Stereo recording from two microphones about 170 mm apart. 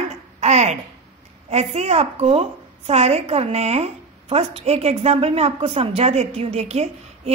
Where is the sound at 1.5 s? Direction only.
40° right (ahead or behind).